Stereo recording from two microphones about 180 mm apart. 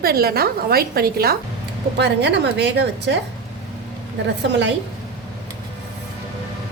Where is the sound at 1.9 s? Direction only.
70° right (ahead or behind).